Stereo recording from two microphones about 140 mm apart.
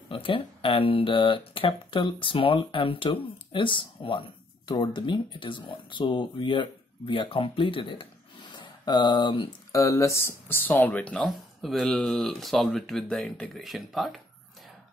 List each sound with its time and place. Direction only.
0.1 s speech: 40° left (ahead or behind)
9.7 s speech: 20° left (ahead or behind); by 14.2 s centre (ahead or behind)